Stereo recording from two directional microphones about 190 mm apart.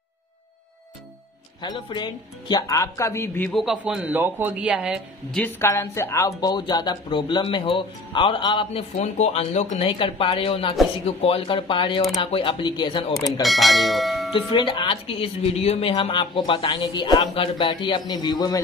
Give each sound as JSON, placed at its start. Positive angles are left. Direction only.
{"t": 1.6, "sound": "a man's voice", "side_deg": 20}
{"t": 5.4, "sound": "speech", "side_deg": 15}
{"t": 13.4, "sound": "speech", "side_deg": 0}
{"t": 14.3, "sound": "speech", "side_deg": 25}